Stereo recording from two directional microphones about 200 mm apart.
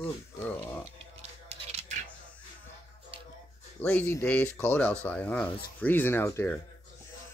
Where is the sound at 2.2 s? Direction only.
5° left (ahead or behind).